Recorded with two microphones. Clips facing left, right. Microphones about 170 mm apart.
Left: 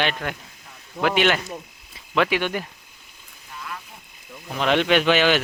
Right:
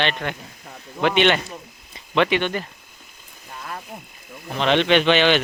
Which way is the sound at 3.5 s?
45° right (ahead or behind).